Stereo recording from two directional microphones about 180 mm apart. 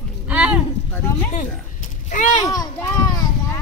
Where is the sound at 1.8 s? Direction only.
45° left (ahead or behind).